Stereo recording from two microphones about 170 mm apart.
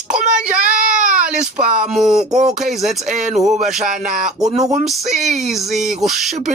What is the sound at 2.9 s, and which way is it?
Speech, 45° right (ahead or behind).